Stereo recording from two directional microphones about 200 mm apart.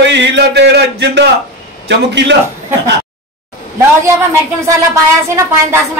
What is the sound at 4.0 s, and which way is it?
Speech, 15° right (ahead or behind).